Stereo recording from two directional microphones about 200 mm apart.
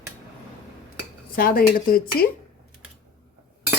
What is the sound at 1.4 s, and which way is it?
Speech, 50° left (ahead or behind).